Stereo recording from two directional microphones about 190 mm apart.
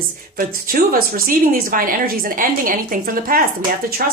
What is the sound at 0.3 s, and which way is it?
A woman's voice, 50° right (ahead or behind).